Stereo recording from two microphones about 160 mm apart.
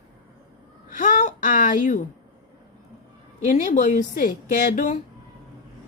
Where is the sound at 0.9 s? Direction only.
55° left (ahead or behind).